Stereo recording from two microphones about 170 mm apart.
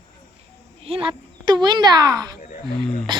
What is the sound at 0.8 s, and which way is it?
A child's voice, 35° right (ahead or behind).